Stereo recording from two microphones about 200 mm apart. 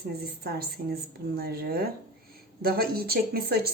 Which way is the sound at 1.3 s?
50° right (ahead or behind).